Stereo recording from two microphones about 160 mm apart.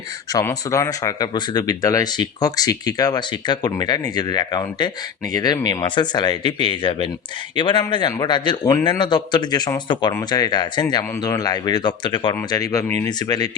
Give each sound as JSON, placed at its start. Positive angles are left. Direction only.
{"t": 0.3, "sound": "speech", "side_deg": 20}